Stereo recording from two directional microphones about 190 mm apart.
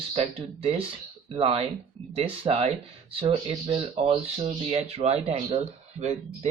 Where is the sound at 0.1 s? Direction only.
30° right (ahead or behind).